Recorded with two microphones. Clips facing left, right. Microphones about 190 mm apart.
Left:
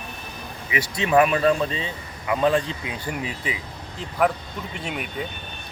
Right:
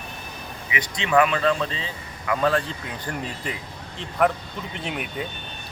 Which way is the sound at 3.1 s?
5° left (ahead or behind).